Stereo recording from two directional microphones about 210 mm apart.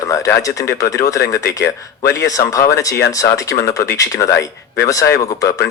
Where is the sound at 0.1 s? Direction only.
15° left (ahead or behind).